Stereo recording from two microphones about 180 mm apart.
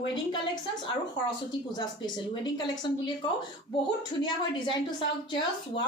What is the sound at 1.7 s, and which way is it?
A woman's voice, 25° left (ahead or behind).